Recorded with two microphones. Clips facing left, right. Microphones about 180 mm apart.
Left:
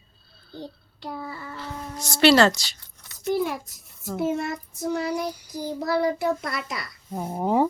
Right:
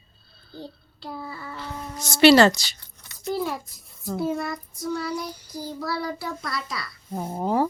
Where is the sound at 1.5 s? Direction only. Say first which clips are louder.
Even; centre (ahead or behind).